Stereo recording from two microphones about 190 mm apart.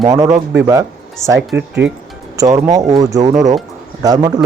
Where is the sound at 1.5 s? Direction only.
65° right (ahead or behind).